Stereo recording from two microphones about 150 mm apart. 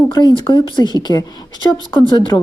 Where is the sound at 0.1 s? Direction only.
30° left (ahead or behind).